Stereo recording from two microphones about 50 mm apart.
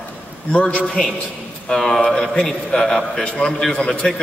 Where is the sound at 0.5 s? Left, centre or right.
Centre.